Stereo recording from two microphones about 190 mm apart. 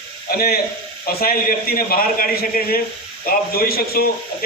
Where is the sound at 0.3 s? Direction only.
50° left (ahead or behind).